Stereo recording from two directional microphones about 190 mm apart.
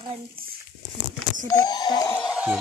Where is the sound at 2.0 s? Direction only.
5° left (ahead or behind).